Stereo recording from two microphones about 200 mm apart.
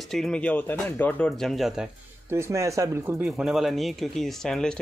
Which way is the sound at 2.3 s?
15° right (ahead or behind).